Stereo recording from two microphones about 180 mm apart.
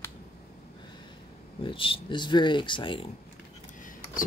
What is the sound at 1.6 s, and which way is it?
Speech, 30° left (ahead or behind).